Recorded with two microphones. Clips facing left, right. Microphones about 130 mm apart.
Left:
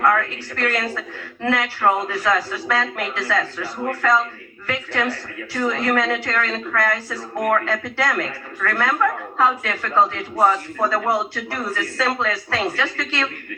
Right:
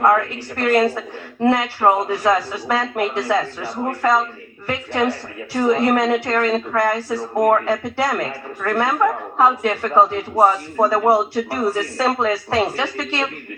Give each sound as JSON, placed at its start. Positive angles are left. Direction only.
{"t": 0.0, "sound": "a woman's voice", "side_deg": -25}